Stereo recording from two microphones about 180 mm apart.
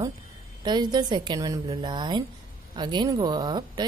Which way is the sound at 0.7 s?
25° right (ahead or behind).